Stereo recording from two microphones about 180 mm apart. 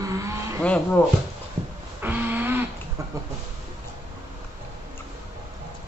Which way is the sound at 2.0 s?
10° right (ahead or behind).